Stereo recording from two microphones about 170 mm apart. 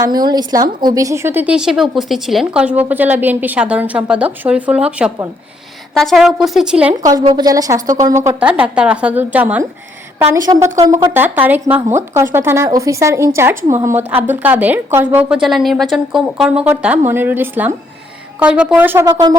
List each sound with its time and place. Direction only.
0.0 s a woman's voice: 25° right (ahead or behind); by 6.9 s 5° right (ahead or behind)
7.1 s a woman's voice: 25° right (ahead or behind)